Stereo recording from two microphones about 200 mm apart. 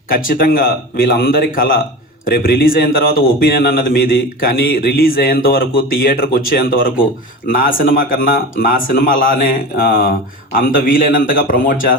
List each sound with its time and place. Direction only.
0.1 s speech: 45° left (ahead or behind)